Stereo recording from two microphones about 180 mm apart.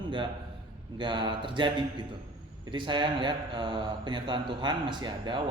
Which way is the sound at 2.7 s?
25° right (ahead or behind).